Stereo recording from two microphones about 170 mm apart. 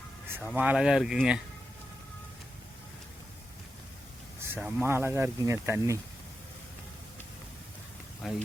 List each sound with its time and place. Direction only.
0.3 s speech: 10° right (ahead or behind)
4.4 s speech: 10° right (ahead or behind)
8.2 s speech: centre (ahead or behind)